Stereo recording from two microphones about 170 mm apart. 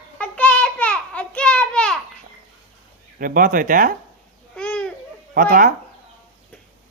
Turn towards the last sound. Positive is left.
turn(degrees=-55)  # may be behind; listen again after turning